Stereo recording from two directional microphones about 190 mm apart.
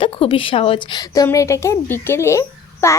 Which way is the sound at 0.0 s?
25° left (ahead or behind).